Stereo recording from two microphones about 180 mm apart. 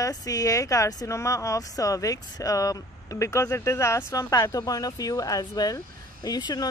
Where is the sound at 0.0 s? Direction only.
20° left (ahead or behind).